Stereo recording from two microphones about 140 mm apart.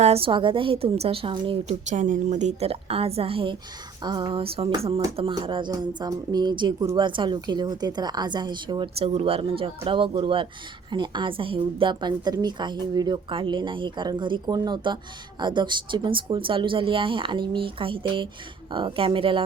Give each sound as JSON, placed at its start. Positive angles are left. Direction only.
{"t": 0.0, "sound": "a woman's voice", "side_deg": -45}
{"t": 1.9, "sound": "a woman's voice", "side_deg": -65}